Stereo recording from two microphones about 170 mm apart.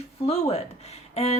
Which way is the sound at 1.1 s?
35° left (ahead or behind).